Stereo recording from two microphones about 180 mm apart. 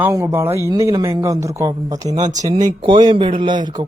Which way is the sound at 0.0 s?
15° right (ahead or behind).